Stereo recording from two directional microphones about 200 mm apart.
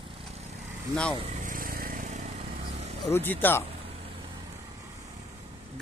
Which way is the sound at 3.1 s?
10° left (ahead or behind).